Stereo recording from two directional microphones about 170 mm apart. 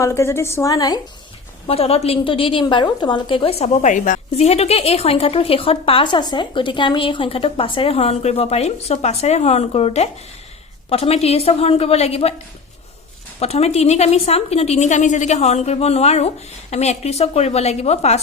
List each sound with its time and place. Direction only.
0.0 s a woman's voice: 15° left (ahead or behind)
1.6 s a woman's voice: 35° left (ahead or behind)
4.4 s a woman's voice: 35° left (ahead or behind)
13.4 s a woman's voice: 40° left (ahead or behind)